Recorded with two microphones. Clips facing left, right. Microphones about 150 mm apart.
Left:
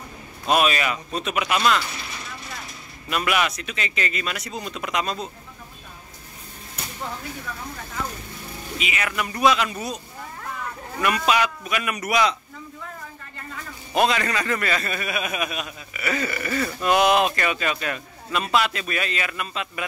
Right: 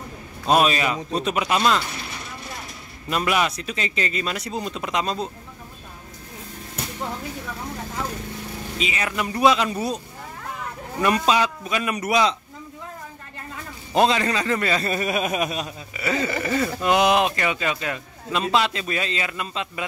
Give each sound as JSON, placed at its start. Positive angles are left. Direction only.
{"t": 0.5, "sound": "a man's voice", "side_deg": -30}
{"t": 3.1, "sound": "a man's voice", "side_deg": -30}
{"t": 8.7, "sound": "a man's voice", "side_deg": -30}
{"t": 11.0, "sound": "a man's voice", "side_deg": -30}
{"t": 13.9, "sound": "a man's voice", "side_deg": -25}